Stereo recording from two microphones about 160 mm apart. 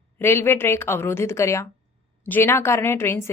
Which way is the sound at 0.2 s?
15° left (ahead or behind).